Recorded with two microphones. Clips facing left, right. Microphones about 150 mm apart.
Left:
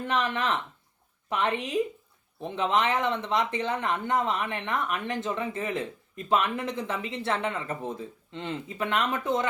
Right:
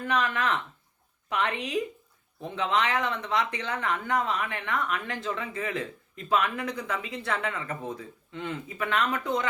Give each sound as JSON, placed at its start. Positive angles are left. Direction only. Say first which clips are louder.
{"t": 0.0, "sound": "speech", "louder": "even", "side_deg": 25}